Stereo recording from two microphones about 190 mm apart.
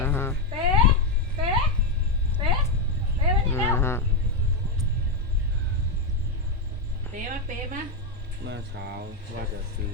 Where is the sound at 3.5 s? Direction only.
15° left (ahead or behind).